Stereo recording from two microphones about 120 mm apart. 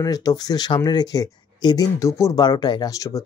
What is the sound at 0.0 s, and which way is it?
Speech, 30° left (ahead or behind).